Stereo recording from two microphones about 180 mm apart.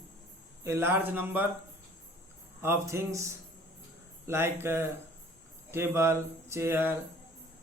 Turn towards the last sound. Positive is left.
turn(degrees=-10)  # may be behind; listen again after turning